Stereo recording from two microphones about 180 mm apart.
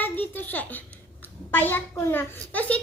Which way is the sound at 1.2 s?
10° left (ahead or behind).